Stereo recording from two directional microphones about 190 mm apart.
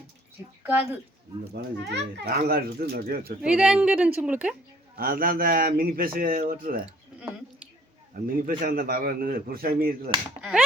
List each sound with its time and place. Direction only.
0.6 s a woman's voice: 10° right (ahead or behind)
1.5 s speech: 60° right (ahead or behind)
3.4 s a woman's voice: 5° right (ahead or behind)
4.9 s a man's voice: 50° right (ahead or behind)
8.1 s a man's voice: 50° right (ahead or behind)